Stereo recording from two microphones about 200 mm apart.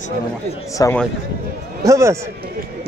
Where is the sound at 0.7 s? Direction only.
15° left (ahead or behind).